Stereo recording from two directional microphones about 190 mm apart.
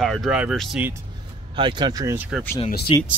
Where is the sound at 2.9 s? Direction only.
25° left (ahead or behind).